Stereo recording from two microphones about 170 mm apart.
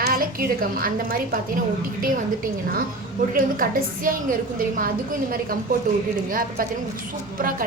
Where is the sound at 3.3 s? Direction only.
55° right (ahead or behind).